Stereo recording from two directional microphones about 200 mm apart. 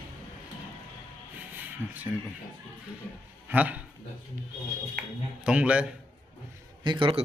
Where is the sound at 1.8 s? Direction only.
10° left (ahead or behind).